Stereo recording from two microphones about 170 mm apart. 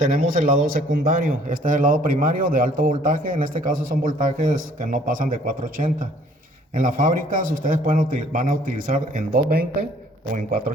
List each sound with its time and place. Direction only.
0.0 s a man's voice: 55° right (ahead or behind)